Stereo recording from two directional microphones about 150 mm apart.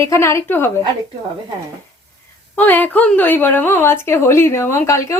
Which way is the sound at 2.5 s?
10° left (ahead or behind).